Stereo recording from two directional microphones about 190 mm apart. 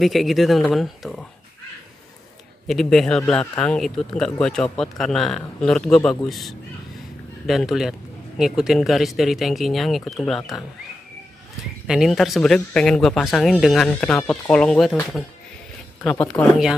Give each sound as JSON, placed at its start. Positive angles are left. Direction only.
{"t": 0.0, "sound": "speech", "side_deg": 0}
{"t": 2.7, "sound": "speech", "side_deg": 0}
{"t": 11.9, "sound": "speech", "side_deg": 0}